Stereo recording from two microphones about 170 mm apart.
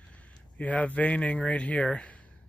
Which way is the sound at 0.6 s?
10° left (ahead or behind).